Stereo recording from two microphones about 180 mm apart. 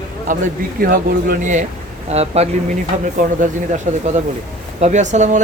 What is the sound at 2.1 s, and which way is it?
Speech, 35° right (ahead or behind).